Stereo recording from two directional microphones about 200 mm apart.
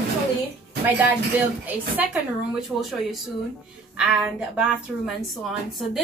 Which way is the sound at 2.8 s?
Centre (ahead or behind).